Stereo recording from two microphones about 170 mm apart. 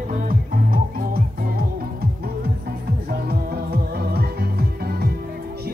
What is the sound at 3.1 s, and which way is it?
Music, 65° right (ahead or behind).